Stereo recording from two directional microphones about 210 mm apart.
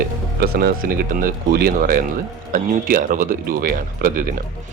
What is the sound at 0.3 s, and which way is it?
Speech, 45° right (ahead or behind).